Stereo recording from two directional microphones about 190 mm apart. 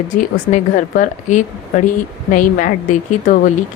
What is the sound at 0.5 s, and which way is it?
Speech, 40° left (ahead or behind).